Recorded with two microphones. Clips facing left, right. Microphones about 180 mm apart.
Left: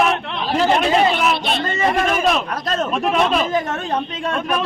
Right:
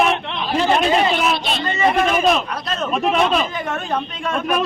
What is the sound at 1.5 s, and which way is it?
Speech, 50° left (ahead or behind).